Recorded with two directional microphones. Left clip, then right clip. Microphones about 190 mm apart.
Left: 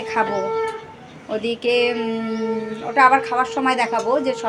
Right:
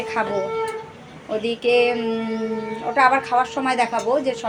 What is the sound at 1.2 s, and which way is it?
A woman's voice, 10° left (ahead or behind).